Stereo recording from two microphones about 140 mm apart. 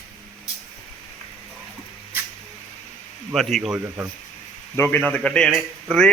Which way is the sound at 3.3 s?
Centre (ahead or behind).